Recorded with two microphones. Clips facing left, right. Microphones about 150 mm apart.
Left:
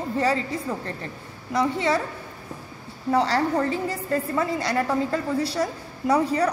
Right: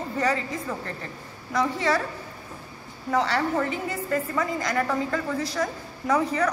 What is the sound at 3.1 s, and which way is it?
A woman's voice, 35° left (ahead or behind).